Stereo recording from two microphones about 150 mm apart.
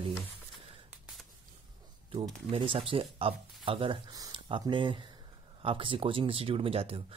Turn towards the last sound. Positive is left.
turn(degrees=-40)  # may be behind; listen again after turning